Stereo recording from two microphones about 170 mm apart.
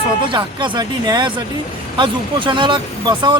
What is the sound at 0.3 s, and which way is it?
Speech, 30° right (ahead or behind).